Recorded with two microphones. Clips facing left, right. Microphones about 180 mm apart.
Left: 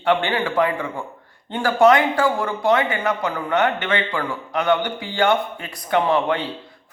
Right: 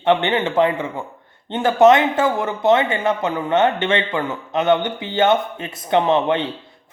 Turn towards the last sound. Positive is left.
turn(degrees=-25)  # may be behind; listen again after turning